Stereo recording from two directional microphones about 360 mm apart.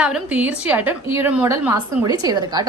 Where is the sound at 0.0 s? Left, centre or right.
Centre.